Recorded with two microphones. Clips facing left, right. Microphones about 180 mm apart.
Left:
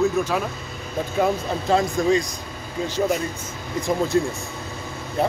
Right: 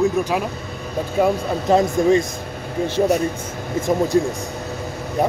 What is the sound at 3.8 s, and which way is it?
Speech, 25° right (ahead or behind).